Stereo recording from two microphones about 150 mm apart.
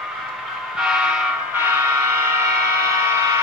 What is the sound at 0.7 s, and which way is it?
Vehicle, 5° right (ahead or behind).